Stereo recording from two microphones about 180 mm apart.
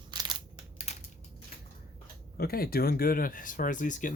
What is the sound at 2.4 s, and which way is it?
Speech, 55° left (ahead or behind).